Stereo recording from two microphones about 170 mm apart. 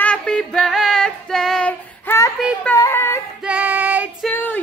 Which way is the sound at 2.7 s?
15° left (ahead or behind).